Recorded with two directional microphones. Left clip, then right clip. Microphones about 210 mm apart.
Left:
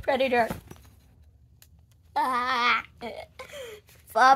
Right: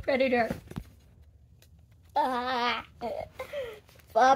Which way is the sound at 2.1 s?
35° left (ahead or behind).